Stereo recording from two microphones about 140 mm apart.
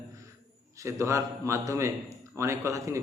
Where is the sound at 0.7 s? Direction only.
20° right (ahead or behind).